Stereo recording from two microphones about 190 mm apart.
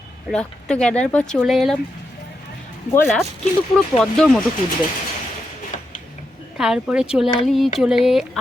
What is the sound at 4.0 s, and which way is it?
Speech, centre (ahead or behind).